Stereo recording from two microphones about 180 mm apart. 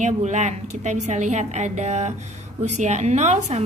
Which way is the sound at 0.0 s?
40° right (ahead or behind).